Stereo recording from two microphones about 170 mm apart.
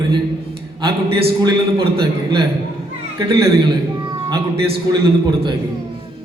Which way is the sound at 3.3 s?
25° right (ahead or behind).